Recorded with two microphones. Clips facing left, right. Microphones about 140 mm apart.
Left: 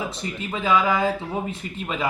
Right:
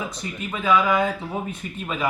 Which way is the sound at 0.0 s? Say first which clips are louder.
Left 1 dB; 30° left (ahead or behind).